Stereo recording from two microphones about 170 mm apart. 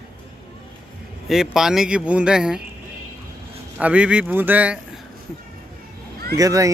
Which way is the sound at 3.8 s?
5° right (ahead or behind).